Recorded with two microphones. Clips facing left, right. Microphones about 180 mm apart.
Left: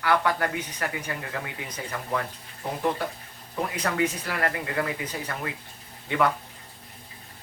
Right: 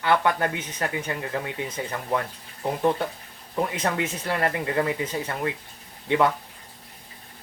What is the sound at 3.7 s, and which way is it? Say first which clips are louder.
Speech: even; 25° right (ahead or behind).